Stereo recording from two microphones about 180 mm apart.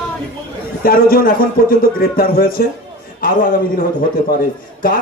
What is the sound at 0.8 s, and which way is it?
A man's voice, 55° left (ahead or behind).